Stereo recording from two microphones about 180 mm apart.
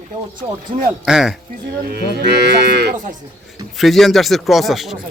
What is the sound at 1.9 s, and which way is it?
Moo, 65° right (ahead or behind).